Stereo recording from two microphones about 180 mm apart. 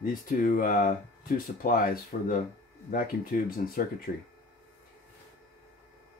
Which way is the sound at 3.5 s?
50° left (ahead or behind).